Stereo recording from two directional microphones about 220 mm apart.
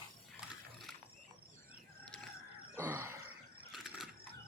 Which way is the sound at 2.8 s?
10° right (ahead or behind).